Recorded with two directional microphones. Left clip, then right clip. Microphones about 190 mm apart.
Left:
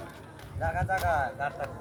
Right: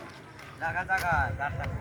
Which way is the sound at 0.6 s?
50° left (ahead or behind).